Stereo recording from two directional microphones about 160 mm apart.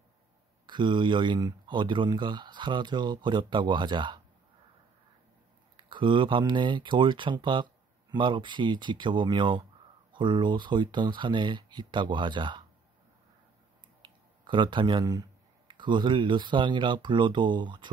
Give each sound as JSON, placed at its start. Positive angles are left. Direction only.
{"t": 0.7, "sound": "speech", "side_deg": -30}
{"t": 5.9, "sound": "speech", "side_deg": -30}
{"t": 14.4, "sound": "speech", "side_deg": -30}